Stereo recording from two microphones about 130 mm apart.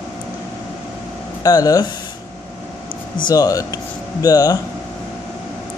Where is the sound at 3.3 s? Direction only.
25° left (ahead or behind).